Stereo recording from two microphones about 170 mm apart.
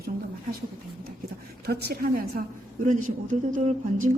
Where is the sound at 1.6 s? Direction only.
70° right (ahead or behind).